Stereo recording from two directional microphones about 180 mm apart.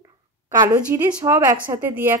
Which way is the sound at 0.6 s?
20° right (ahead or behind).